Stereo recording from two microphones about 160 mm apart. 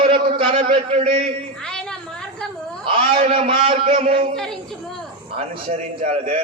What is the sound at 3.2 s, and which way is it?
A man's voice, 40° right (ahead or behind).